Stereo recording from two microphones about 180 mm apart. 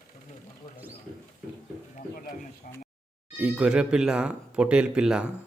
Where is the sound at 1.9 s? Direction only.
50° left (ahead or behind).